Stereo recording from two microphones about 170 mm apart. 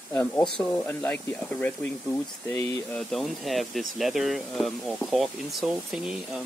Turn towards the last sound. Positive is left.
turn(degrees=-5)  # may be behind; listen again after turning